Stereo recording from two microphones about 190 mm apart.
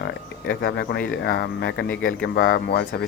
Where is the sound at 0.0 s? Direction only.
65° left (ahead or behind).